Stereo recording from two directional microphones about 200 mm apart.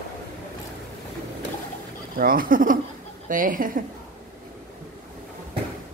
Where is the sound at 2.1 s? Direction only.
45° right (ahead or behind).